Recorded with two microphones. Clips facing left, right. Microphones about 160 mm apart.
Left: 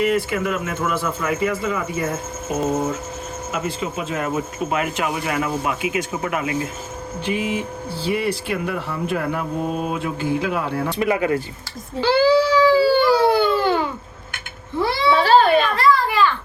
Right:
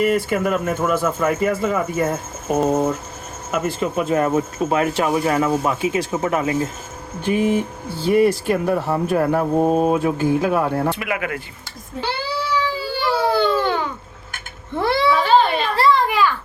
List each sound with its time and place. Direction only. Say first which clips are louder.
0.0 s speech: right 2 dB; 45° right (ahead or behind)
7.3 s speech: right 5 dB; 50° right (ahead or behind)
10.9 s speech: left 6 dB; 30° left (ahead or behind)
11.9 s baby cry: left 10 dB; 90° left
13.2 s baby cry: left 2 dB; 15° left (ahead or behind)
14.8 s a sound: right 2 dB; 55° right (ahead or behind)
15.1 s a sound: left 5 dB; 40° left (ahead or behind)
15.7 s children playing: right 1 dB; 30° right (ahead or behind)
16.0 s a sound: even; 15° right (ahead or behind)